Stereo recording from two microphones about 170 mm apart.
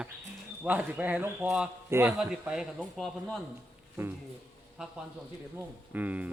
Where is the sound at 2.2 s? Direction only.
5° right (ahead or behind).